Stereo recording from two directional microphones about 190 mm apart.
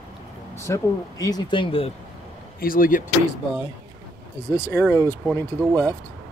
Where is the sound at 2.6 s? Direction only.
50° left (ahead or behind).